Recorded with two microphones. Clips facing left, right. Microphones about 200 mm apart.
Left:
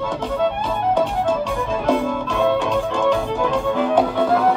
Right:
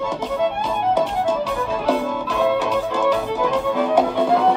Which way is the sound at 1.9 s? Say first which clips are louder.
Left 2 dB; 5° right (ahead or behind).